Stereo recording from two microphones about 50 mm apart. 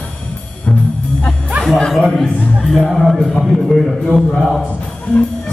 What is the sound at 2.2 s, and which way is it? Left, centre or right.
A man's voice, centre.